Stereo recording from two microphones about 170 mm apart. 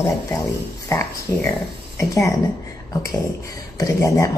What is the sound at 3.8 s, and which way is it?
Speech, 20° left (ahead or behind).